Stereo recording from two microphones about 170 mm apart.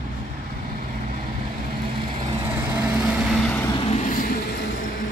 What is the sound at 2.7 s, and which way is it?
Vehicle, 5° right (ahead or behind).